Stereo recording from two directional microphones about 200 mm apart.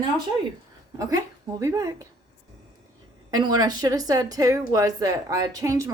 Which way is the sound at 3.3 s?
20° right (ahead or behind).